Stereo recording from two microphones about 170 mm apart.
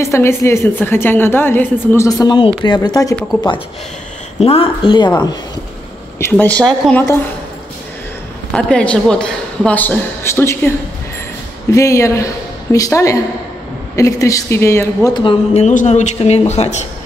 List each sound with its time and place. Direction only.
0.0 s a woman's voice: 15° left (ahead or behind)
4.4 s speech: 35° left (ahead or behind)
6.1 s a woman's voice: 10° left (ahead or behind)
8.5 s a woman's voice: 5° left (ahead or behind)
11.7 s a woman's voice: 20° left (ahead or behind)
15.1 s a woman's voice: 30° left (ahead or behind)
15.6 s speech: 45° left (ahead or behind)